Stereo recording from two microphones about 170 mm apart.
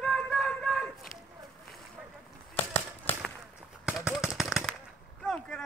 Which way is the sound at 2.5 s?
10° left (ahead or behind).